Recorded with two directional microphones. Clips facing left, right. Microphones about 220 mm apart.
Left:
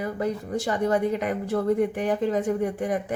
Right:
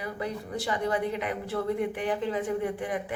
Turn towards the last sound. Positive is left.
turn(degrees=45)  # may be behind; listen again after turning